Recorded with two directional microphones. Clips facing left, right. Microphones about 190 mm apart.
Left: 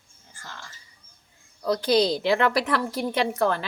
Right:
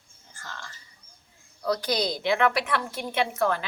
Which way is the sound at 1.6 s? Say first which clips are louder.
Left 5 dB; 25° left (ahead or behind).